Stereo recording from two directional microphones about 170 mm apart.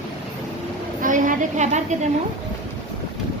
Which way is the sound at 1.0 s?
50° right (ahead or behind).